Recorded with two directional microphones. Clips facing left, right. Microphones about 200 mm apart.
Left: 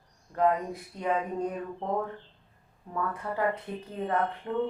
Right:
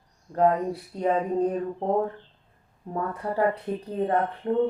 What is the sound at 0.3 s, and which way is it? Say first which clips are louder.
Speech: right 4 dB; 35° right (ahead or behind).